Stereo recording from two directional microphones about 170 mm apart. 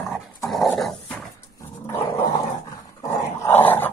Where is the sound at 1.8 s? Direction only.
20° left (ahead or behind).